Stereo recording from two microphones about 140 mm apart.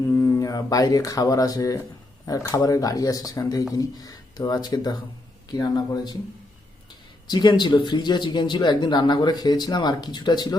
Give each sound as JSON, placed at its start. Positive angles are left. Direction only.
{"t": 0.1, "sound": "speech", "side_deg": 20}
{"t": 7.3, "sound": "speech", "side_deg": 30}